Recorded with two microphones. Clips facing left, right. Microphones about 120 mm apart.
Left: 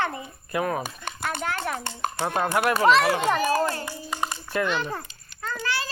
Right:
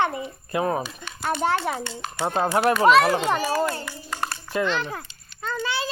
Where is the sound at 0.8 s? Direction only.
50° left (ahead or behind).